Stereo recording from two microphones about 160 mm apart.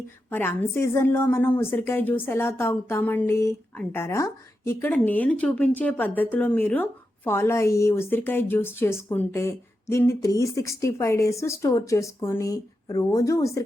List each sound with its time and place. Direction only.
0.3 s a woman's voice: 15° left (ahead or behind)